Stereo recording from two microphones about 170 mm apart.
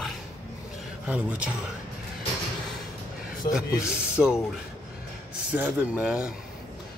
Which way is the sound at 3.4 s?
65° left (ahead or behind).